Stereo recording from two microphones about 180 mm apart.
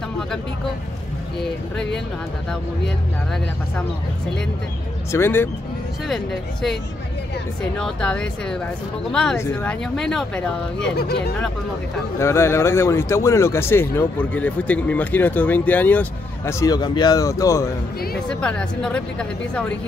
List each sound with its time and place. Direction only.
5.1 s speech: 15° left (ahead or behind)
6.0 s a woman's voice: centre (ahead or behind)
11.0 s speech: 60° left (ahead or behind)
12.2 s speech: 15° left (ahead or behind)
18.3 s a woman's voice: 5° left (ahead or behind)